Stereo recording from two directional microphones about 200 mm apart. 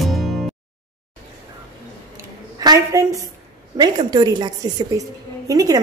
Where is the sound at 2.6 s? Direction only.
15° right (ahead or behind).